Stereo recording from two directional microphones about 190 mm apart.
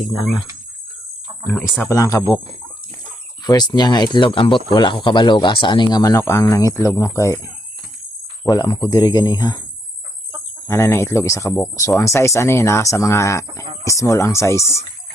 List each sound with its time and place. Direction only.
1.5 s speech: 10° left (ahead or behind)
3.4 s speech: 20° left (ahead or behind)
8.4 s speech: 25° left (ahead or behind)
10.7 s speech: 15° left (ahead or behind)